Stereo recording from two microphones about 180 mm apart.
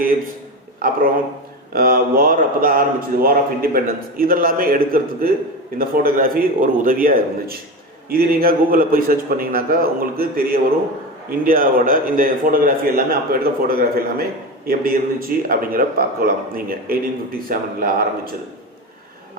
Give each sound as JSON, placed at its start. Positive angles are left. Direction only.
{"t": 1.7, "sound": "a man's voice", "side_deg": -55}